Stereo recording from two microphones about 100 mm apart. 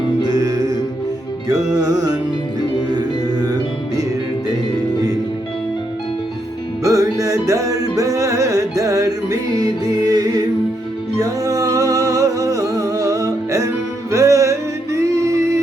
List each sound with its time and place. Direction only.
0.3 s music: 35° right (ahead or behind)
1.7 s music: 40° right (ahead or behind)
6.8 s music: 35° right (ahead or behind)
11.2 s music: 35° right (ahead or behind)